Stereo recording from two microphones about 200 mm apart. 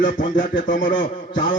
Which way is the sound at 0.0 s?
40° left (ahead or behind).